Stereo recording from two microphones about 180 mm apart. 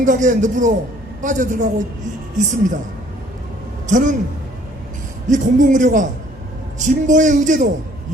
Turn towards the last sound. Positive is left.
turn(degrees=-45)  # may be behind; listen again after turning